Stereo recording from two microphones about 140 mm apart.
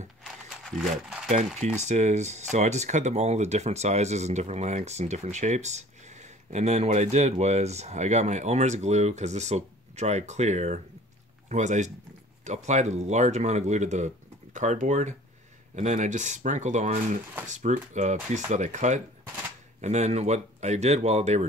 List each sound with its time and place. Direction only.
0.7 s speech: centre (ahead or behind)
1.8 s speech: 55° right (ahead or behind)